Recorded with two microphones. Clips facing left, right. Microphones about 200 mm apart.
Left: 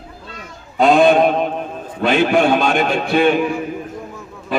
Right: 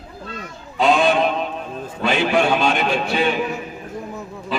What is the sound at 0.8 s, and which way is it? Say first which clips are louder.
Speech: left 5 dB; 55° left (ahead or behind).